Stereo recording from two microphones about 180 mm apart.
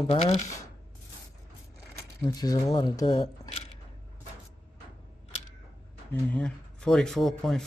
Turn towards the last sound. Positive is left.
turn(degrees=5)  # may be behind; listen again after turning